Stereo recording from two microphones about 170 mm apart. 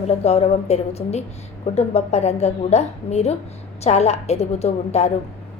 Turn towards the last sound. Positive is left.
turn(degrees=40)  # may be behind; listen again after turning